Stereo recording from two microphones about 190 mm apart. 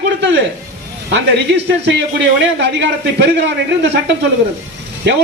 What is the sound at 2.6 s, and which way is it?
A man's voice, 65° right (ahead or behind).